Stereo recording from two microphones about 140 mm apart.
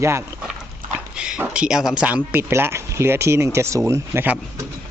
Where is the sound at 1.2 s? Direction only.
5° right (ahead or behind).